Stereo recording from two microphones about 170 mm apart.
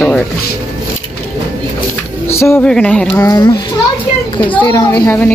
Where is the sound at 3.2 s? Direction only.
20° left (ahead or behind).